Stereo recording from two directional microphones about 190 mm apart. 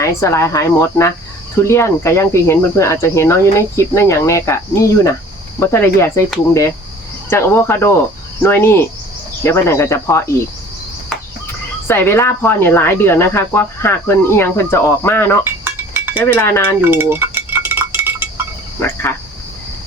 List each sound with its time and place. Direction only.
0.0 s speech: 15° left (ahead or behind)
7.3 s speech: 15° left (ahead or behind)
11.9 s speech: 10° left (ahead or behind)
15.4 s chink: 10° right (ahead or behind)
16.2 s speech: 15° left (ahead or behind)
16.8 s cutlery: 10° right (ahead or behind)